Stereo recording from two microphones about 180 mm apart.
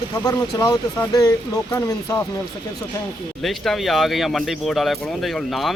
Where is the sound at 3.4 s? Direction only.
Centre (ahead or behind).